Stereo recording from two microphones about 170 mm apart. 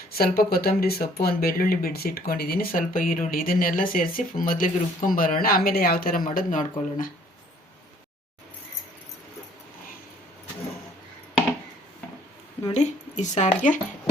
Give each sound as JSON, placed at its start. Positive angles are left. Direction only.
{"t": 0.1, "sound": "speech", "side_deg": 65}
{"t": 12.6, "sound": "speech", "side_deg": 40}